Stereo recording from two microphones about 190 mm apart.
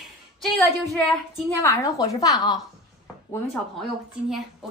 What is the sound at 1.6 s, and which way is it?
A woman's voice, 15° left (ahead or behind).